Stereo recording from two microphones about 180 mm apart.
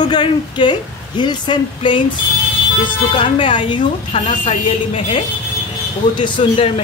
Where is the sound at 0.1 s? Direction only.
25° left (ahead or behind).